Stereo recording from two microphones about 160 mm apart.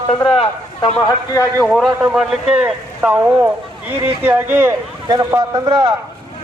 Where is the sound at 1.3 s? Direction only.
20° left (ahead or behind).